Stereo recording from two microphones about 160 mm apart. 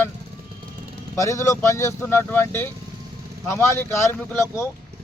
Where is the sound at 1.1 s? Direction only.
20° left (ahead or behind).